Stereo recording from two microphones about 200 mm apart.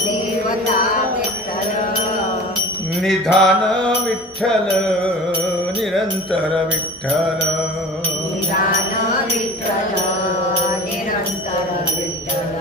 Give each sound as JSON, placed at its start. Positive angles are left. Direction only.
{"t": 3.0, "sound": "mantra", "side_deg": 5}
{"t": 5.9, "sound": "music", "side_deg": 0}